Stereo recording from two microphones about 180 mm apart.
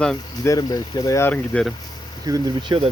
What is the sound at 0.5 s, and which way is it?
Speech, 20° left (ahead or behind).